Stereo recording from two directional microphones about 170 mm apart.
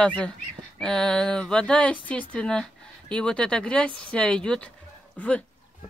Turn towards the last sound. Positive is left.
turn(degrees=5)  # may be behind; listen again after turning